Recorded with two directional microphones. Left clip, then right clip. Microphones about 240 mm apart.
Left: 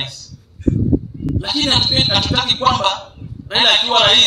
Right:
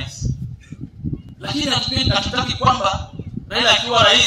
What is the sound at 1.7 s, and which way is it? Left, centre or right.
A man's voice, left.